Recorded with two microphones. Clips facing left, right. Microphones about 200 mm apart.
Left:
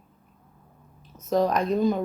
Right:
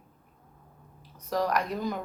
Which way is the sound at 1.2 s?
25° left (ahead or behind).